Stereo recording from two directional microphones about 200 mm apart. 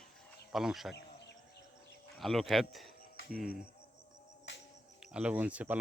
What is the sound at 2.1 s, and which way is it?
Speech, centre (ahead or behind).